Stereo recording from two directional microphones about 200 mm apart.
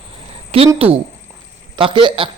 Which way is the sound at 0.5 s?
30° right (ahead or behind).